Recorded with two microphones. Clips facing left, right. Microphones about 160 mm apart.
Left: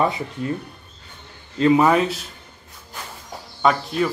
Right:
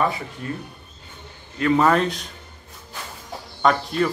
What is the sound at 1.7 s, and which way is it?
Speech, 10° left (ahead or behind).